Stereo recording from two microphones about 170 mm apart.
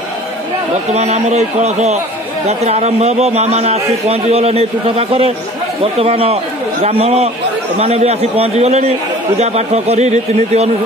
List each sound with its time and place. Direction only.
0.9 s a man's voice: 40° right (ahead or behind)